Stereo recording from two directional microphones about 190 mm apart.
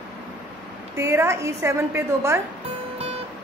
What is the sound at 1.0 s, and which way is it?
A woman's voice, 15° right (ahead or behind).